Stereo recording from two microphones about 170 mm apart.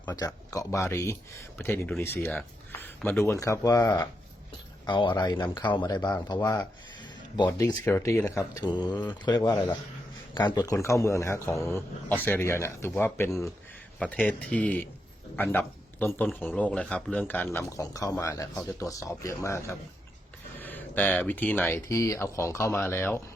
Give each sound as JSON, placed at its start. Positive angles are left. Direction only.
{"t": 0.2, "sound": "speech", "side_deg": 20}